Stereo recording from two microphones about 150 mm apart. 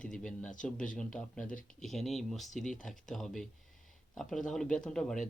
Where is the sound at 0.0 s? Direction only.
5° left (ahead or behind).